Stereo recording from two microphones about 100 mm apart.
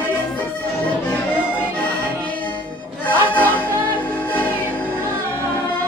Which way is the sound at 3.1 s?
15° left (ahead or behind).